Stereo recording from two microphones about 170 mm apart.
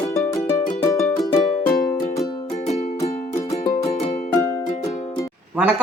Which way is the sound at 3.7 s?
40° left (ahead or behind).